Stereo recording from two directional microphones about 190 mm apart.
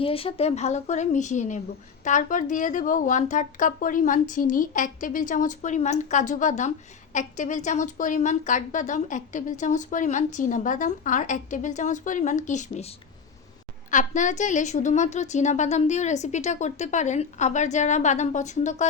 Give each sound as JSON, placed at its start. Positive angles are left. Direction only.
{"t": 0.0, "sound": "speech", "side_deg": 30}
{"t": 13.9, "sound": "speech", "side_deg": 40}